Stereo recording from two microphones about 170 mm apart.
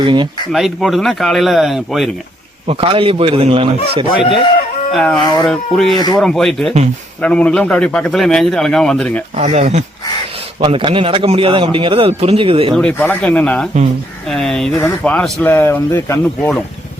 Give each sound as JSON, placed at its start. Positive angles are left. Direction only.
{"t": 0.0, "sound": "speech", "side_deg": -25}
{"t": 0.5, "sound": "a man's voice", "side_deg": 0}
{"t": 2.6, "sound": "a man's voice", "side_deg": -35}
{"t": 4.2, "sound": "speech", "side_deg": 30}
{"t": 4.9, "sound": "a man's voice", "side_deg": 0}
{"t": 9.3, "sound": "a man's voice", "side_deg": -40}
{"t": 10.6, "sound": "a man's voice", "side_deg": -30}
{"t": 12.7, "sound": "a man's voice", "side_deg": 10}
{"t": 14.7, "sound": "speech", "side_deg": 15}